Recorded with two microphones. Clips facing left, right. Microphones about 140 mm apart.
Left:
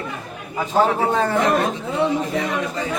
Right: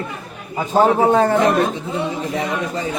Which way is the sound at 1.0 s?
45° right (ahead or behind).